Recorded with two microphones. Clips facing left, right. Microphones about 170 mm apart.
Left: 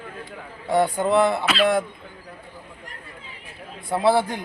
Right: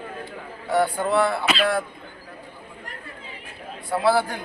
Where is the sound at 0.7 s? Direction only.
20° left (ahead or behind).